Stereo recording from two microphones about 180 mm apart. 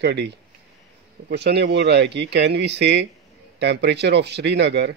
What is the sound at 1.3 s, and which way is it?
Speech, 70° right (ahead or behind).